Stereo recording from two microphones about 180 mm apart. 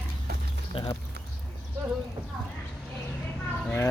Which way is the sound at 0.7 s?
30° left (ahead or behind).